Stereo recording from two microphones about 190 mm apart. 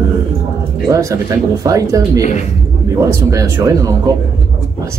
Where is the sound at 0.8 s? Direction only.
15° right (ahead or behind).